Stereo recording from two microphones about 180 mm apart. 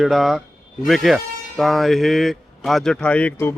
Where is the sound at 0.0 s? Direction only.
Centre (ahead or behind).